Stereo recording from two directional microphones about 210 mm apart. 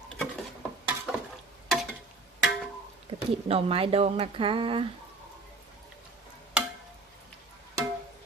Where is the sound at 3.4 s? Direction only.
25° right (ahead or behind).